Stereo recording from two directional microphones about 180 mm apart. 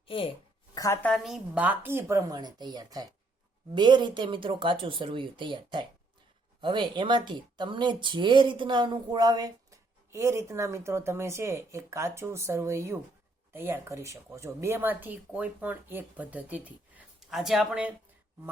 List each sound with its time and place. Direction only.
0.1 s a sound: 30° left (ahead or behind)
0.8 s a woman's voice: 15° left (ahead or behind)
1.1 s speech: centre (ahead or behind)